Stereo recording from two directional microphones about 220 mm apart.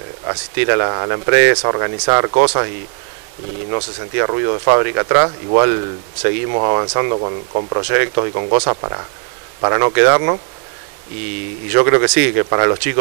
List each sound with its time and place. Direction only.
0.6 s speech: 20° right (ahead or behind)
3.7 s speech: 25° right (ahead or behind)
11.7 s speech: 20° right (ahead or behind)